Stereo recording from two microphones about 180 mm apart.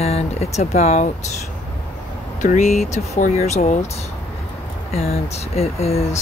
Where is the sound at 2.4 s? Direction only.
40° left (ahead or behind).